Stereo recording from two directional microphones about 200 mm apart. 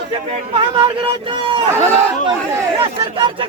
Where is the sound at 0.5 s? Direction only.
25° right (ahead or behind).